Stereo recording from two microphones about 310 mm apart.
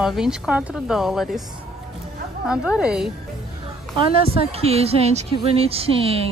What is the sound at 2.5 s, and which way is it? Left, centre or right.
Speech, centre.